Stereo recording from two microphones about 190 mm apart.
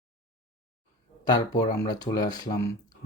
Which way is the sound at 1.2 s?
20° left (ahead or behind).